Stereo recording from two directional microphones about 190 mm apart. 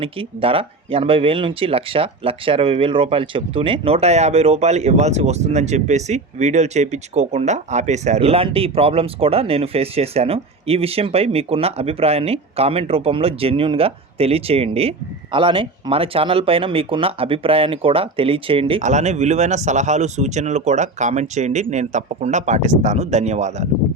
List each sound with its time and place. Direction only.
0.0 s speech: 30° right (ahead or behind)